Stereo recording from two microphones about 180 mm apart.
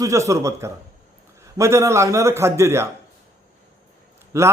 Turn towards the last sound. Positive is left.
turn(degrees=-15)  # may be behind; listen again after turning